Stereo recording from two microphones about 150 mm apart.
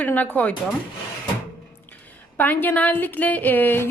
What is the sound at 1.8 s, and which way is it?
A woman's voice, 10° left (ahead or behind).